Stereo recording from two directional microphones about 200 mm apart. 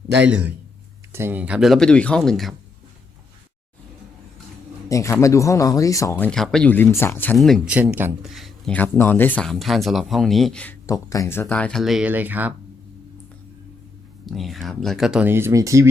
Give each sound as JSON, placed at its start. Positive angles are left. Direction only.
{"t": 0.3, "sound": "speech", "side_deg": -5}
{"t": 4.9, "sound": "speech", "side_deg": 15}
{"t": 14.3, "sound": "speech", "side_deg": 0}